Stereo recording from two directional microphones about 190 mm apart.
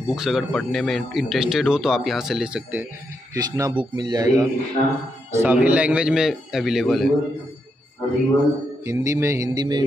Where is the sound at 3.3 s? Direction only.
20° right (ahead or behind).